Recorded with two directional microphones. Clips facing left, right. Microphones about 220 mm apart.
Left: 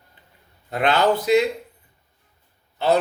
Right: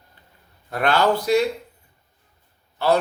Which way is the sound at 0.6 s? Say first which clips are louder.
Even; 20° left (ahead or behind).